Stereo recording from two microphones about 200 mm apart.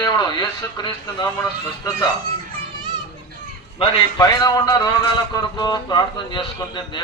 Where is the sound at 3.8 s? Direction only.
20° left (ahead or behind).